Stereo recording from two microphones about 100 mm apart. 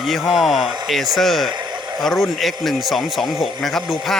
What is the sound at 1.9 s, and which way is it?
Speech, centre (ahead or behind).